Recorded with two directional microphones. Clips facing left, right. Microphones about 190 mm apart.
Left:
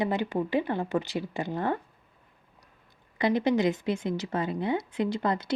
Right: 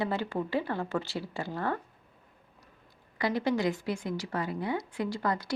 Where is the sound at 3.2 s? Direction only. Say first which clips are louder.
Left 4 dB; 20° left (ahead or behind).